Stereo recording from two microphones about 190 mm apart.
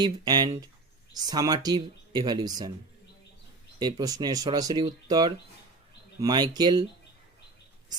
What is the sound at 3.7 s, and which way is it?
Speech, 20° right (ahead or behind).